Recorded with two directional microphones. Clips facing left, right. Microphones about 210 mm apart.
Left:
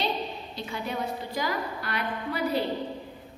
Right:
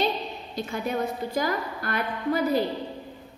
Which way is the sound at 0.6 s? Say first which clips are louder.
Right 5 dB; 45° right (ahead or behind).